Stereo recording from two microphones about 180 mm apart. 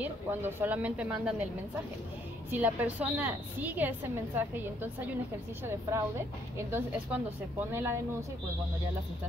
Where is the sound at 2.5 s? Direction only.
10° right (ahead or behind).